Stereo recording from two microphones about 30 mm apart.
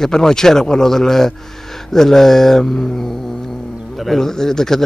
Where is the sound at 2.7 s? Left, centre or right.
Left.